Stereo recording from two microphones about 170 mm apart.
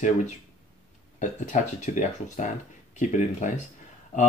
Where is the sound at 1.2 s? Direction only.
45° left (ahead or behind).